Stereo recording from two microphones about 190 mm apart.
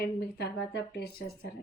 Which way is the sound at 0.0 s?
60° left (ahead or behind).